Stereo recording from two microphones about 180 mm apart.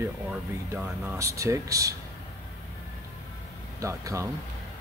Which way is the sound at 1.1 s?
15° right (ahead or behind).